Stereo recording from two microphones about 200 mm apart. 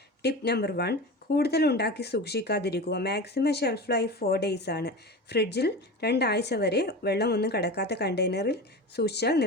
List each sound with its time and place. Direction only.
0.2 s speech: 55° left (ahead or behind)